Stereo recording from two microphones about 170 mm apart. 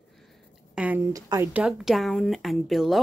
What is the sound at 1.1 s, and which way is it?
Speech, 20° right (ahead or behind).